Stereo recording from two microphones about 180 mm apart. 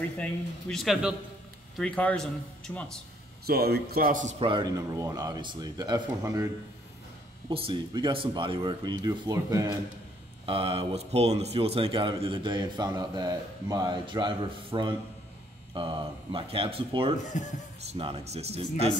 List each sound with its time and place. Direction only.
0.2 s speech: centre (ahead or behind)
3.4 s speech: 60° right (ahead or behind)
4.4 s a man's voice: 25° right (ahead or behind)
7.4 s speech: 30° right (ahead or behind)
10.4 s speech: 30° right (ahead or behind)